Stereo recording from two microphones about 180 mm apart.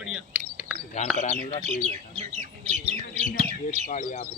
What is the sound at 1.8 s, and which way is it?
Speech, 40° right (ahead or behind).